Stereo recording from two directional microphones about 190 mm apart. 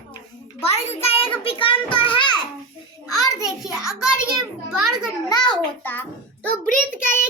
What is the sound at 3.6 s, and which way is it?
Child singing, 5° right (ahead or behind).